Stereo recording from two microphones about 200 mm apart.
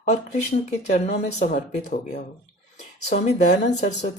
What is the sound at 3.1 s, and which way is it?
Speech, 35° left (ahead or behind).